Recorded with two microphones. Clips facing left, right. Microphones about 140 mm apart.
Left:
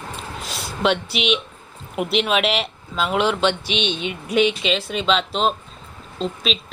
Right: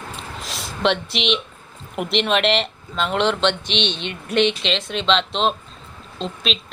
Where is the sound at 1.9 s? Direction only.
Centre (ahead or behind).